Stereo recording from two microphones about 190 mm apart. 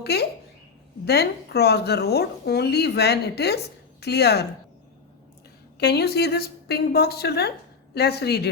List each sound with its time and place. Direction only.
0.0 s a child's voice: 60° left (ahead or behind)
5.8 s speech: 60° left (ahead or behind)